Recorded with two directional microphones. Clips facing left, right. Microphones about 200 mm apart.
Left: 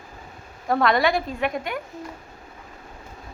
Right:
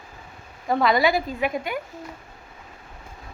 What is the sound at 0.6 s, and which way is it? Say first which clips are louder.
A woman's voice: even; centre (ahead or behind).